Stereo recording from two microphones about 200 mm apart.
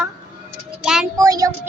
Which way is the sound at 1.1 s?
20° right (ahead or behind).